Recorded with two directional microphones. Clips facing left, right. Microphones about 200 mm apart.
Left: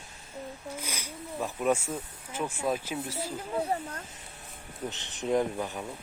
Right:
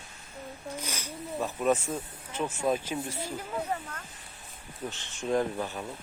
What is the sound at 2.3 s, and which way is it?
Speech, 10° left (ahead or behind).